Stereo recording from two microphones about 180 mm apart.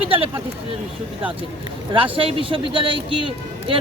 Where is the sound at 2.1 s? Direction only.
30° right (ahead or behind).